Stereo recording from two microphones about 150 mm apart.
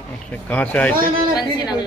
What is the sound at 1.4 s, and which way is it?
Speech, 25° left (ahead or behind).